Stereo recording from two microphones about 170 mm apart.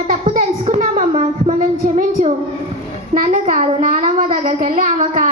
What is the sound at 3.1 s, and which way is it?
A child's voice, 55° right (ahead or behind).